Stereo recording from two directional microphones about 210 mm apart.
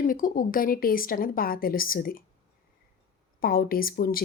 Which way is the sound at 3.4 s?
45° left (ahead or behind).